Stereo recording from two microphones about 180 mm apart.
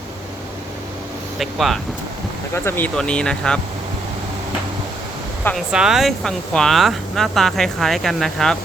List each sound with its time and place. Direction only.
1.4 s speech: centre (ahead or behind)
5.7 s speech: 5° right (ahead or behind)